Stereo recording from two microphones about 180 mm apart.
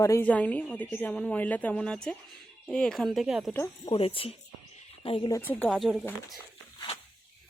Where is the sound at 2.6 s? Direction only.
5° left (ahead or behind).